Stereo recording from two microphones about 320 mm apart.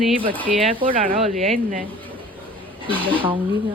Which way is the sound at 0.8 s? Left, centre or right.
Right.